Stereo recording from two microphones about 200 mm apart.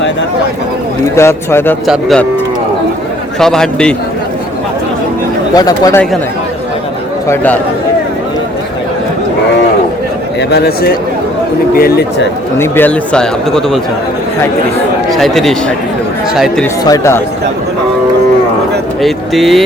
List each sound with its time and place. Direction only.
1.1 s speech: 15° left (ahead or behind)
1.9 s a man's voice: centre (ahead or behind)
3.4 s a man's voice: 5° left (ahead or behind)
5.5 s speech: 20° left (ahead or behind)
7.3 s speech: 10° left (ahead or behind)
11.8 s speech: 50° left (ahead or behind)
12.5 s a man's voice: 10° left (ahead or behind)
15.1 s a man's voice: centre (ahead or behind)
16.8 s speech: 15° left (ahead or behind)
19.0 s a man's voice: centre (ahead or behind)